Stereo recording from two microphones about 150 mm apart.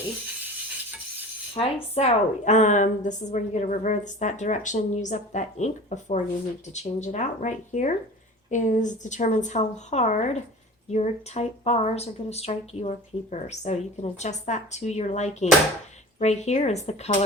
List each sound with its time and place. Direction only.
1.5 s speech: 45° left (ahead or behind)